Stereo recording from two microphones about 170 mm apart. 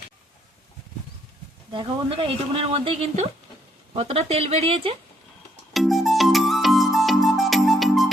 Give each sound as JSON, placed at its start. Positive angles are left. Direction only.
{"t": 1.7, "sound": "speech", "side_deg": -30}
{"t": 5.7, "sound": "music", "side_deg": 0}